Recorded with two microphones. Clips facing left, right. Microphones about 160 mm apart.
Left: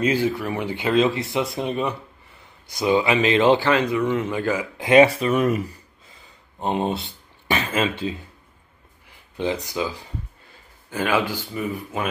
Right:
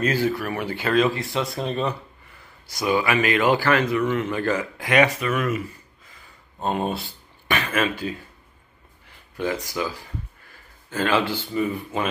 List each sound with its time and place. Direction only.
0.0 s speech: 15° left (ahead or behind)
4.7 s speech: 25° left (ahead or behind)
6.6 s speech: 20° left (ahead or behind)
9.4 s speech: 20° left (ahead or behind)